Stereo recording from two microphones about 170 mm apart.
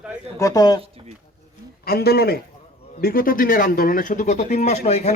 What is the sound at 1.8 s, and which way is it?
A man's voice, 65° left (ahead or behind).